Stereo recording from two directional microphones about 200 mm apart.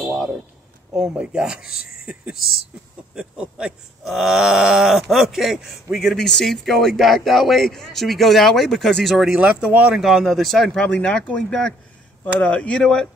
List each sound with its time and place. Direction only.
0.9 s speech: 5° right (ahead or behind)
1.8 s a sound: 50° left (ahead or behind)
2.0 s speech: 5° right (ahead or behind)